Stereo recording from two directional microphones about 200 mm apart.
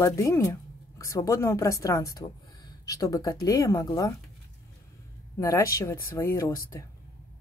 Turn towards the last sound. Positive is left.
turn(degrees=15)  # may be behind; listen again after turning